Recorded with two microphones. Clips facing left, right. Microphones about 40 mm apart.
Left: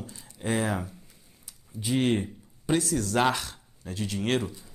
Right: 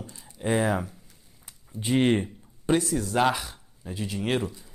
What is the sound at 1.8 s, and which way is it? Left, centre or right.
Speech, right.